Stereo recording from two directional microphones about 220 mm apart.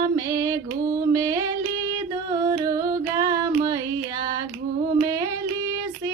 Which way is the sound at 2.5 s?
15° right (ahead or behind).